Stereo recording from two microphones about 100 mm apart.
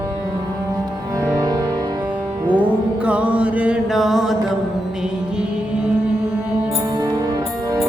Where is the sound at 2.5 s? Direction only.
15° right (ahead or behind).